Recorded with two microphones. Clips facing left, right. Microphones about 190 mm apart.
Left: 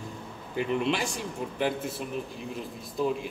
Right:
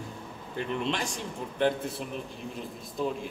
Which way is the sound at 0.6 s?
10° left (ahead or behind).